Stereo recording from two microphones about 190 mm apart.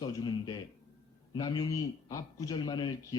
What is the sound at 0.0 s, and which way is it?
A man's voice, 20° left (ahead or behind).